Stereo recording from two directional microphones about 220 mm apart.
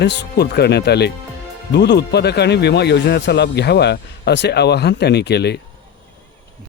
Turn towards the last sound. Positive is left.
turn(degrees=50)  # may be behind; listen again after turning